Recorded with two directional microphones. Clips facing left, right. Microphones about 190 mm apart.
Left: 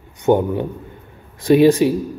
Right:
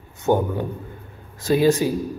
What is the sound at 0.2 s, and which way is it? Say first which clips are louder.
Speech: left 4 dB; 25° left (ahead or behind).